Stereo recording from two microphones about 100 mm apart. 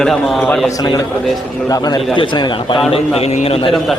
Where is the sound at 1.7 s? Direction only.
40° left (ahead or behind).